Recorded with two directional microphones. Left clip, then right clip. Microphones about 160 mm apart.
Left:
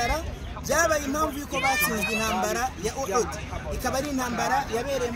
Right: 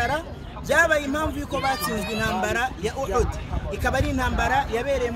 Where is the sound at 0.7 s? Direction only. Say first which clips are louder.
Right 4 dB; 35° right (ahead or behind).